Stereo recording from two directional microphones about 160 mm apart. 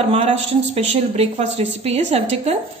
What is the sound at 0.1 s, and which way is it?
A woman's voice, 40° right (ahead or behind).